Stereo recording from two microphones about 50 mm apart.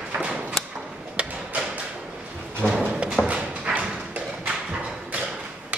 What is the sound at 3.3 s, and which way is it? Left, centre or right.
Thump, right.